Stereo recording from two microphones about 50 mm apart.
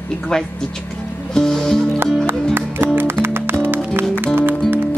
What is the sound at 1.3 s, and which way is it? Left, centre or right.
Music, centre.